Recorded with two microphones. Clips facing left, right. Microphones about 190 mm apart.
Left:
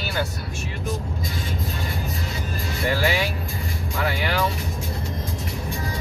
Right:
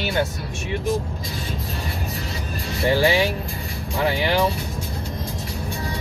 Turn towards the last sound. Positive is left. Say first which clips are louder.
# right 4 dB
turn(degrees=-25)  # may be behind; listen again after turning